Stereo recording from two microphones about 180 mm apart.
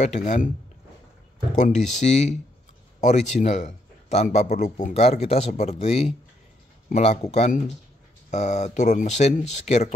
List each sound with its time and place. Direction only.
0.0 s a man's voice: 40° left (ahead or behind)
1.5 s a man's voice: 45° left (ahead or behind)